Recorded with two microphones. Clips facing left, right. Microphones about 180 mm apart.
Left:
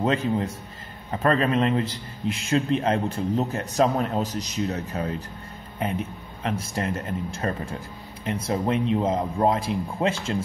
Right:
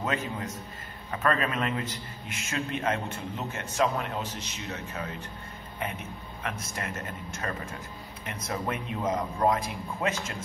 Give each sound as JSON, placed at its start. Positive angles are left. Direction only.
{"t": 0.0, "sound": "a man's voice", "side_deg": 30}